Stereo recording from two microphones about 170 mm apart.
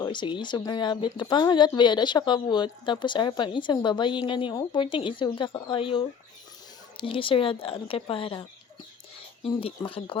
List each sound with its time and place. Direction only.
0.0 s speech: 25° left (ahead or behind)